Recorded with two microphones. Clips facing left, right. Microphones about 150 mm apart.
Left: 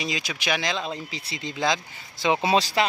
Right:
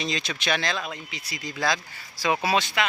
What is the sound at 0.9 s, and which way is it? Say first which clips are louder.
Speech: left 4 dB; 30° left (ahead or behind).